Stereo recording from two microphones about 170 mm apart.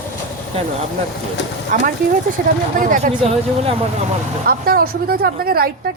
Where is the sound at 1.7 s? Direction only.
50° right (ahead or behind).